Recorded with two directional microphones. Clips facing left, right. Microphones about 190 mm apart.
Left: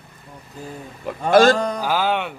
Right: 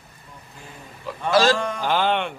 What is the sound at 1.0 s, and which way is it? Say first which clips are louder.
Speech: left 5 dB; 50° left (ahead or behind).